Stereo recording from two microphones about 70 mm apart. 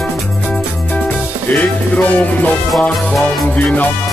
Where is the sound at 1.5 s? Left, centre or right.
Left.